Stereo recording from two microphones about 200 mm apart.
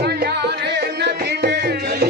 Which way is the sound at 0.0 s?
50° right (ahead or behind).